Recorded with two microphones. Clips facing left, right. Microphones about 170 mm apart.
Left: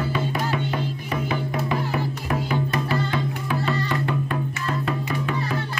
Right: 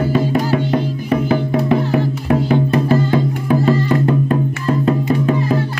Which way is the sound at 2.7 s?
35° right (ahead or behind).